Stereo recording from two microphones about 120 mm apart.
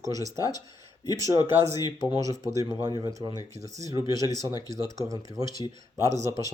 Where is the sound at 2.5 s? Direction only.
30° right (ahead or behind).